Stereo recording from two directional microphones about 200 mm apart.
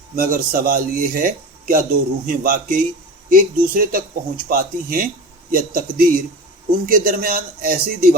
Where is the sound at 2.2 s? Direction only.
45° right (ahead or behind).